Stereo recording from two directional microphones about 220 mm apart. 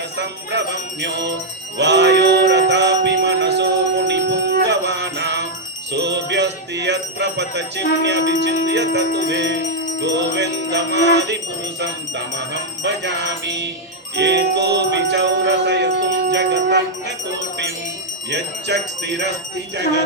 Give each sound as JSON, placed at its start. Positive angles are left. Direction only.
{"t": 0.2, "sound": "jingle bell", "side_deg": -50}
{"t": 1.8, "sound": "music", "side_deg": -50}
{"t": 5.9, "sound": "jingle bell", "side_deg": -50}
{"t": 8.3, "sound": "music", "side_deg": -50}
{"t": 12.8, "sound": "music", "side_deg": -50}
{"t": 18.3, "sound": "music", "side_deg": -50}